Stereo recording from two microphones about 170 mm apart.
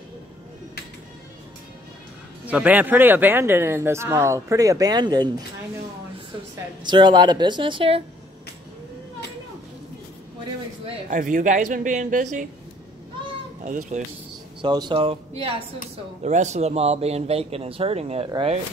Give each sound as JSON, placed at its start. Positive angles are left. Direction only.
{"t": 2.4, "sound": "speech", "side_deg": -10}
{"t": 6.8, "sound": "a woman's voice", "side_deg": -25}
{"t": 10.9, "sound": "a woman's voice", "side_deg": -45}
{"t": 13.7, "sound": "a woman's voice", "side_deg": -45}
{"t": 14.6, "sound": "speech", "side_deg": -25}